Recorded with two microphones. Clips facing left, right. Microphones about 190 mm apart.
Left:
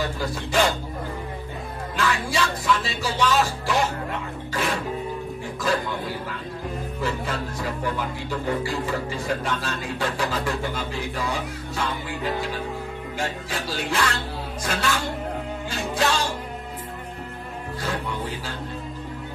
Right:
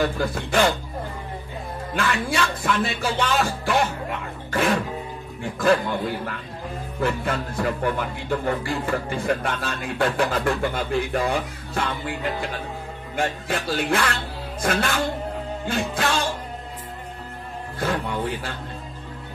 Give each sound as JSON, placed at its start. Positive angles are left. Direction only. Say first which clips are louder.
{"t": 0.0, "sound": "speech", "louder": "right 4 dB", "side_deg": -55}
{"t": 2.0, "sound": "speech", "louder": "right 1 dB", "side_deg": -55}
{"t": 4.5, "sound": "music", "louder": "right 5 dB", "side_deg": -55}
{"t": 7.0, "sound": "speech", "louder": "right 5 dB", "side_deg": -55}
{"t": 13.2, "sound": "speech", "louder": "right 5 dB", "side_deg": -55}
{"t": 17.7, "sound": "music", "louder": "right 4 dB", "side_deg": -55}